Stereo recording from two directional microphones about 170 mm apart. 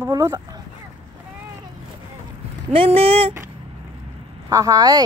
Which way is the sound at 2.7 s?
35° right (ahead or behind).